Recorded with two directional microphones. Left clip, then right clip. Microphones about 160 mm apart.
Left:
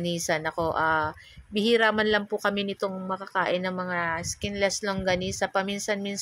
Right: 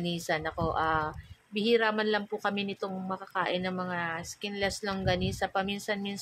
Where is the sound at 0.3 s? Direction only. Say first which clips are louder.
Left 4 dB; 25° left (ahead or behind).